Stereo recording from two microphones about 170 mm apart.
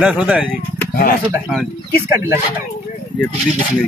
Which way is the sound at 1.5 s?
5° left (ahead or behind).